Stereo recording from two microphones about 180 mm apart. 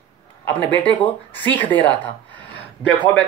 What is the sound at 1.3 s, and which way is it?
Speech, 10° left (ahead or behind).